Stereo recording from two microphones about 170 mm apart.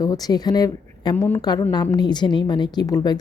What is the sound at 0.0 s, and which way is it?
A woman's voice, 20° left (ahead or behind).